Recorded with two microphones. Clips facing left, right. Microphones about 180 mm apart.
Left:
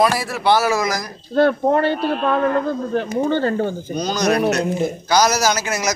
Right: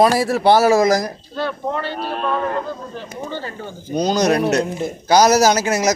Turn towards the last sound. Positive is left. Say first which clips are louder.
# right 4 dB
turn(degrees=-30)  # may be behind; listen again after turning